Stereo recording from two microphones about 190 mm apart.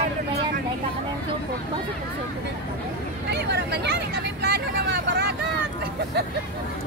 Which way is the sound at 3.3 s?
60° right (ahead or behind).